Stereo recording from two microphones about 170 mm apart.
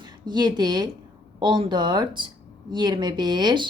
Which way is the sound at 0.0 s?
25° right (ahead or behind).